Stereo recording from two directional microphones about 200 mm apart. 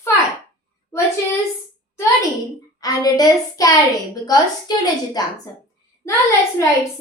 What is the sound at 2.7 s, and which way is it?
A woman's voice, 20° left (ahead or behind).